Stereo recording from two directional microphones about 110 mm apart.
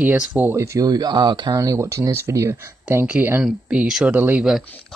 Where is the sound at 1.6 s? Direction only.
25° right (ahead or behind); by 4.6 s 10° right (ahead or behind).